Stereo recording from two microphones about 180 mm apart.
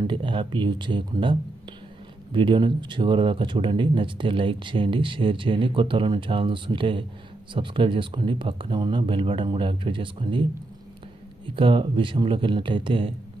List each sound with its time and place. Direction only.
0.0 s speech: 30° right (ahead or behind)
11.4 s speech: 30° right (ahead or behind)